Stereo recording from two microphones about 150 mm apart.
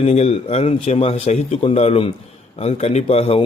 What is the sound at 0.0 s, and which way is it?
A man's voice, 45° left (ahead or behind).